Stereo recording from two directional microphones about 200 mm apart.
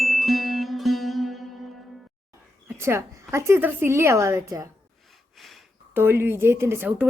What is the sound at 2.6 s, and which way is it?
A woman's voice, 15° right (ahead or behind).